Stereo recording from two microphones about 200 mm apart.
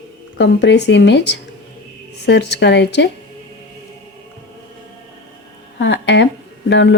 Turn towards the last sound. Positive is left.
turn(degrees=60)  # may be behind; listen again after turning